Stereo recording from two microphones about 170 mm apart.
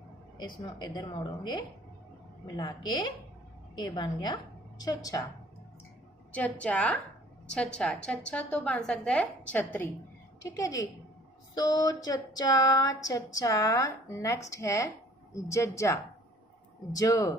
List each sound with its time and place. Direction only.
0.6 s speech: 25° left (ahead or behind)
6.3 s a woman's voice: 10° left (ahead or behind)